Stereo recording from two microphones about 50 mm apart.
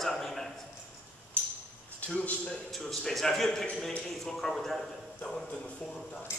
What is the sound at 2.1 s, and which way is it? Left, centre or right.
Speech, left.